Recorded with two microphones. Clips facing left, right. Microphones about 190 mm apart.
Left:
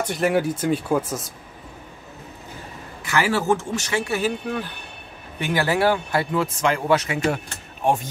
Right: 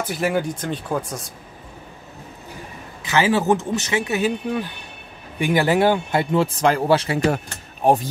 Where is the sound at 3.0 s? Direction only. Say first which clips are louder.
Right 3 dB; 20° right (ahead or behind).